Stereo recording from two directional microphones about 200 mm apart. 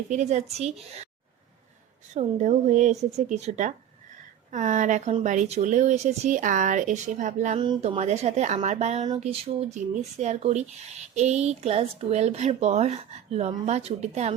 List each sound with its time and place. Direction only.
0.1 s speech: 35° right (ahead or behind)
2.1 s speech: 35° right (ahead or behind)
7.6 s speech: 25° right (ahead or behind)